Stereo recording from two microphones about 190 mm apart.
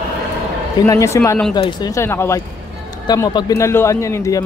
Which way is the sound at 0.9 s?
15° left (ahead or behind).